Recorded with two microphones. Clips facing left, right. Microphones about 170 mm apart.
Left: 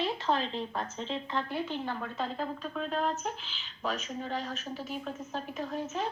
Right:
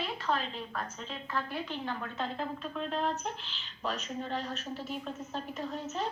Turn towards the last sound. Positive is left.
turn(degrees=10)  # may be behind; listen again after turning